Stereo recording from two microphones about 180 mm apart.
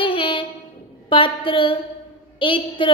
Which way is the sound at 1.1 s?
30° left (ahead or behind).